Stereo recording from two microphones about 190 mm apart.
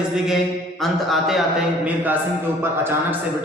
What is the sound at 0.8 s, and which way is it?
A man's voice, centre (ahead or behind).